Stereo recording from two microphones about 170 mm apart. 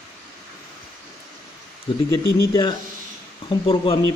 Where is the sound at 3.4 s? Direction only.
30° left (ahead or behind).